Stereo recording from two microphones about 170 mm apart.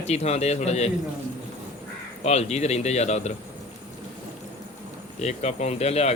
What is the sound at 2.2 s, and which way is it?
Speech, 40° left (ahead or behind).